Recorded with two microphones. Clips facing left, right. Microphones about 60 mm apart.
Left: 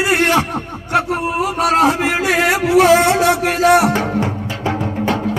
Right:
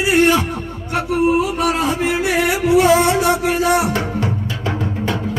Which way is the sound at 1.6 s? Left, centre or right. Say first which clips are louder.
Left 4 dB; left.